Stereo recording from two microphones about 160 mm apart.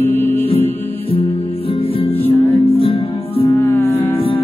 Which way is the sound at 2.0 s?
35° left (ahead or behind).